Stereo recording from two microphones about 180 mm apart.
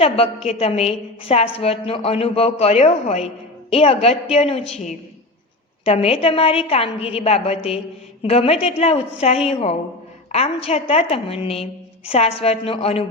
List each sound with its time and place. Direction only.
0.4 s a woman's voice: 35° left (ahead or behind)